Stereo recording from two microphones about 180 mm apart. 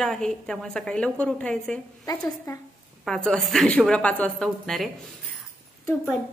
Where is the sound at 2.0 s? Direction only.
15° left (ahead or behind).